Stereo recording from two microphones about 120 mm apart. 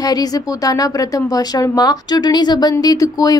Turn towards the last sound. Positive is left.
turn(degrees=30)  # may be behind; listen again after turning